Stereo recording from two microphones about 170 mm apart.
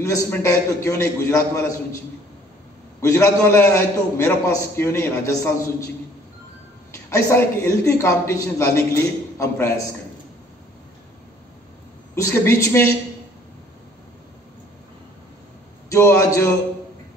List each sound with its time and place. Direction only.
0.0 s a man's voice: 15° left (ahead or behind)
3.0 s a man's voice: 15° left (ahead or behind)
7.1 s a man's voice: 15° left (ahead or behind)
12.2 s a man's voice: 15° left (ahead or behind)
15.9 s a man's voice: 15° left (ahead or behind)